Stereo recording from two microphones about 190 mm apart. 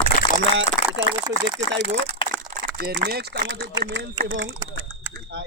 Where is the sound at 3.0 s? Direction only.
60° right (ahead or behind).